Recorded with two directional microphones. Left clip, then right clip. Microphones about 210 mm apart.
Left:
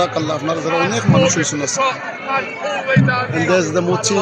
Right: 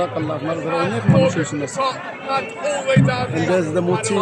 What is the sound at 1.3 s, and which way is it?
Speech, 20° right (ahead or behind).